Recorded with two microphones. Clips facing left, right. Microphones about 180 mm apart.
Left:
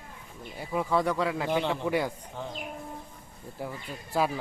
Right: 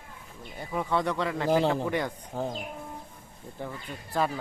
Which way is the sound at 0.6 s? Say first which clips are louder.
Left 1 dB; 5° left (ahead or behind).